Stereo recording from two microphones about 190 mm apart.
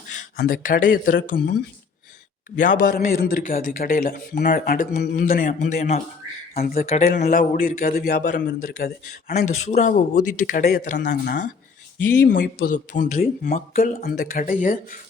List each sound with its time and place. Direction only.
0.3 s a man's voice: 50° left (ahead or behind)
2.6 s a man's voice: 45° left (ahead or behind)
6.9 s a man's voice: 40° left (ahead or behind)
8.4 s a man's voice: 75° left (ahead or behind)
8.6 s a man's voice: 50° left (ahead or behind)
12.6 s a man's voice: 45° left (ahead or behind)